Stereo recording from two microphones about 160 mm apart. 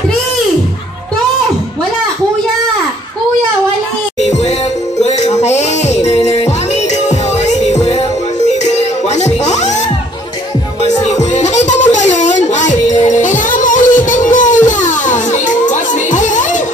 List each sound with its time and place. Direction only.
4.2 s music: 45° left (ahead or behind)
10.8 s music: 45° left (ahead or behind)